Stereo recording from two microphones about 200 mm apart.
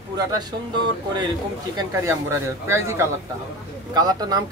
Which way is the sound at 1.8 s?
15° right (ahead or behind).